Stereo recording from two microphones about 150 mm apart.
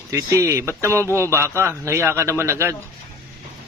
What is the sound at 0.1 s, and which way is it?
A man's voice, 20° right (ahead or behind).